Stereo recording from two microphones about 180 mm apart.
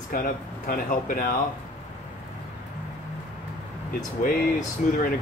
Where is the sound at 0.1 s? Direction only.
50° left (ahead or behind).